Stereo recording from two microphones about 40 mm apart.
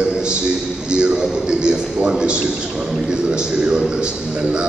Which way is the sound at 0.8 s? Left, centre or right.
Right.